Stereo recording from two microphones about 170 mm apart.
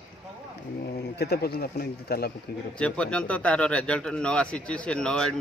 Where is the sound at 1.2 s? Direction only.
70° left (ahead or behind).